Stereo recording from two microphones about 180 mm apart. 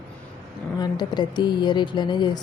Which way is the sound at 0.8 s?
25° left (ahead or behind).